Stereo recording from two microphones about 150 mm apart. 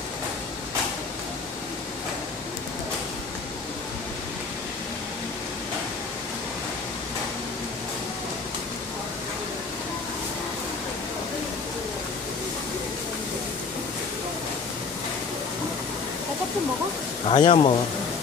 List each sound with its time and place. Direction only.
17.3 s speech: 40° left (ahead or behind)